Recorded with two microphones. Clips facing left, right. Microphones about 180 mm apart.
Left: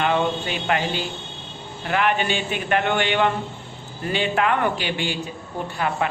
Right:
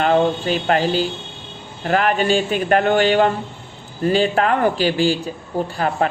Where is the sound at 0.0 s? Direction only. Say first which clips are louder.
Right 5 dB; 40° right (ahead or behind).